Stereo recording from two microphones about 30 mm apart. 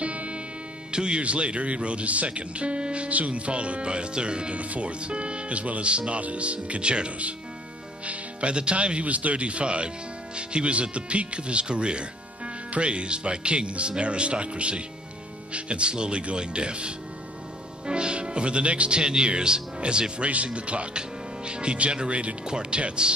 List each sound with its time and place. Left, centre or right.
0.0 s music: right
0.9 s speech: right
3.1 s speech: right
4.6 s speech: right
8.0 s music: right
8.7 s speech: right